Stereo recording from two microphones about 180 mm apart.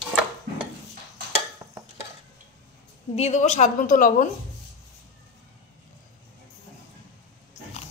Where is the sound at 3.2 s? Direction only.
40° left (ahead or behind).